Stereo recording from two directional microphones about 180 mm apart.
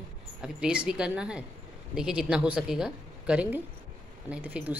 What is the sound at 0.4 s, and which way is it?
A woman's voice, 5° right (ahead or behind).